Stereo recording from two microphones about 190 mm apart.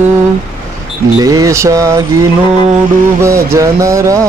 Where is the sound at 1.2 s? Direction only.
15° right (ahead or behind).